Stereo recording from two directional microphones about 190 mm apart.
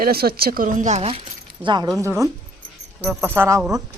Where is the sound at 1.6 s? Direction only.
25° right (ahead or behind).